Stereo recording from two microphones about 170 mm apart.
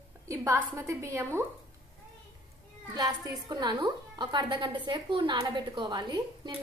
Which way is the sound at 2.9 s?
25° right (ahead or behind).